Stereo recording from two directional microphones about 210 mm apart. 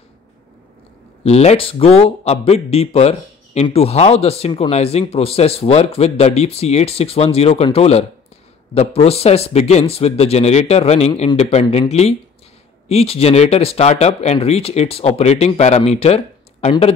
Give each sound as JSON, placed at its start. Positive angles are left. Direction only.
{"t": 1.2, "sound": "speech", "side_deg": 30}
{"t": 11.6, "sound": "speech", "side_deg": 20}
{"t": 11.9, "sound": "speech", "side_deg": 30}